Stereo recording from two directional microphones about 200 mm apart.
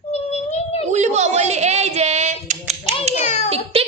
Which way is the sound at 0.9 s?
35° right (ahead or behind).